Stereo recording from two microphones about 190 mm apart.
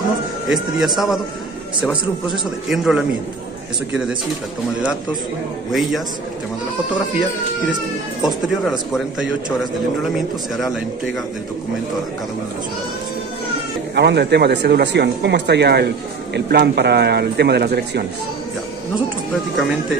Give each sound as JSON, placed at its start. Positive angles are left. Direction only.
{"t": 0.5, "sound": "speech", "side_deg": 0}
{"t": 5.7, "sound": "speech", "side_deg": 0}
{"t": 8.2, "sound": "speech", "side_deg": -5}
{"t": 13.9, "sound": "speech", "side_deg": -65}